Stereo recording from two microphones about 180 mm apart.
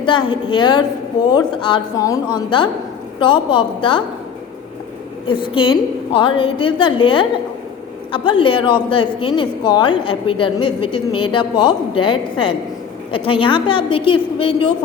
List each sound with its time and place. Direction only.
0.0 s a woman's voice: 25° left (ahead or behind)
5.3 s a woman's voice: 30° left (ahead or behind)